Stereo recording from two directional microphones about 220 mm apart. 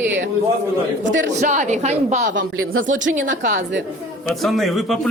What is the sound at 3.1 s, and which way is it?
Speech, 35° right (ahead or behind).